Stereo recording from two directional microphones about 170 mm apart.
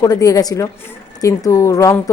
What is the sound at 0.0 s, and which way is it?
A woman's voice, 20° left (ahead or behind).